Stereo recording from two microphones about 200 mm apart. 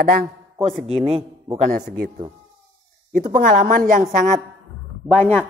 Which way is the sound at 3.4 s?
40° right (ahead or behind).